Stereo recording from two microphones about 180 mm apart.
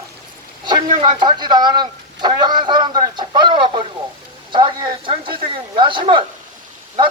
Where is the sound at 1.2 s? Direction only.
25° right (ahead or behind).